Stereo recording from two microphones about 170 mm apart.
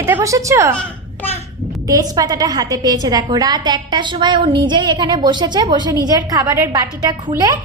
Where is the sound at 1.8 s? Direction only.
20° right (ahead or behind).